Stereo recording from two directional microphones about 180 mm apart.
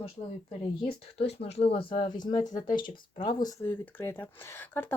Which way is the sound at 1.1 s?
35° left (ahead or behind).